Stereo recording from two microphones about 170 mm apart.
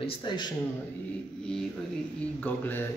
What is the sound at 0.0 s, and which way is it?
Speech, 30° left (ahead or behind).